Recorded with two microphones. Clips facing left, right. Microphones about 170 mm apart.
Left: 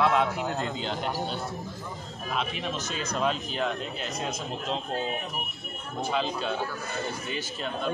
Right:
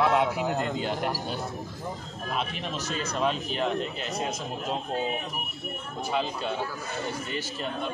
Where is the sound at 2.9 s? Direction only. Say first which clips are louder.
Right 1 dB; centre (ahead or behind).